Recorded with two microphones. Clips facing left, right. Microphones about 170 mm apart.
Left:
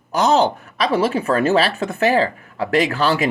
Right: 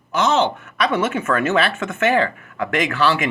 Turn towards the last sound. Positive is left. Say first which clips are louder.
# left 2 dB
turn(degrees=35)  # may be behind; listen again after turning